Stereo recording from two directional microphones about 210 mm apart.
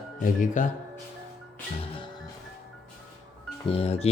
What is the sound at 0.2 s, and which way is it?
Speech, 40° left (ahead or behind).